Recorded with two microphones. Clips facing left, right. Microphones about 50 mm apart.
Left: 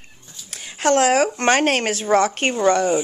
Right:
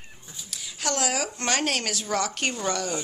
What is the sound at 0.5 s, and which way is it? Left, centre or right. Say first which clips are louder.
Speech: left 12 dB; left.